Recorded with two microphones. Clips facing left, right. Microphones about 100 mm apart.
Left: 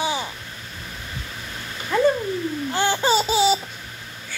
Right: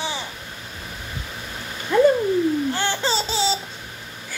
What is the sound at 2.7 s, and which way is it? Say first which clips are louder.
Laughter: left 4 dB; 15° left (ahead or behind).